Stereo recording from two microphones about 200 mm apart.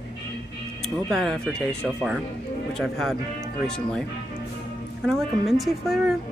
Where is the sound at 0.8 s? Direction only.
5° left (ahead or behind).